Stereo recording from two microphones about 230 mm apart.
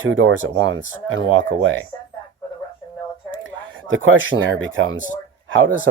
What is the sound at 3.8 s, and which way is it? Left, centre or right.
Speech, right.